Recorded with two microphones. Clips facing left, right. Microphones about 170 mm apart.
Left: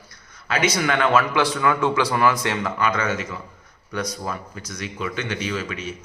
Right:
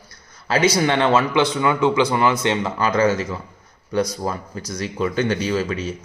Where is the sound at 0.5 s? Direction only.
30° right (ahead or behind).